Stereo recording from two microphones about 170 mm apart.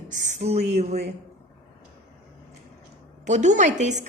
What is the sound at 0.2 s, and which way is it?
Speech, 45° right (ahead or behind).